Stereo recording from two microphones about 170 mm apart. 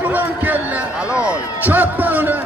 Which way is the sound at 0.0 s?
10° right (ahead or behind).